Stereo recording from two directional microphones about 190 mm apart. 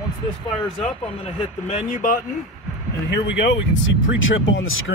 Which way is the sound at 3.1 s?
65° left (ahead or behind).